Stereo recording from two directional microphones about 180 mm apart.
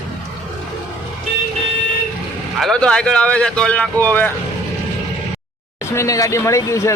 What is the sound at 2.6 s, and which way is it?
Speech, 5° left (ahead or behind).